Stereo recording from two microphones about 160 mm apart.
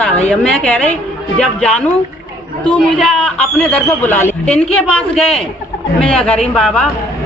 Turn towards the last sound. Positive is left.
turn(degrees=5)  # may be behind; listen again after turning